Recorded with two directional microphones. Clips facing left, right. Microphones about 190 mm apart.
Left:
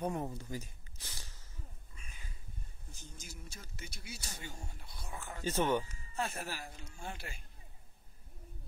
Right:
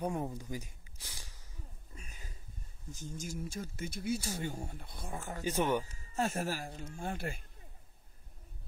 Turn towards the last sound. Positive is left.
turn(degrees=-50)  # may be behind; listen again after turning